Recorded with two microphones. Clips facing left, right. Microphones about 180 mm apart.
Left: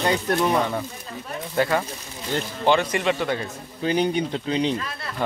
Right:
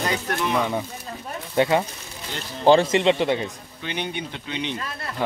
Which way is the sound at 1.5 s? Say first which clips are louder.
Right 2 dB; 25° right (ahead or behind).